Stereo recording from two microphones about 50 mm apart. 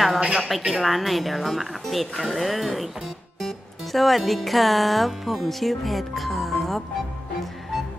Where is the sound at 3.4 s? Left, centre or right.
Centre.